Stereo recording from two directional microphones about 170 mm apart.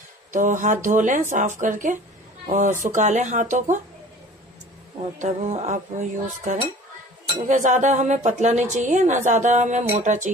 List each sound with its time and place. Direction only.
0.3 s a woman's voice: 50° right (ahead or behind)
5.2 s a woman's voice: 40° right (ahead or behind)